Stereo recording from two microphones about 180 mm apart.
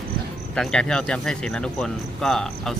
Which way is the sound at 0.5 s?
5° left (ahead or behind).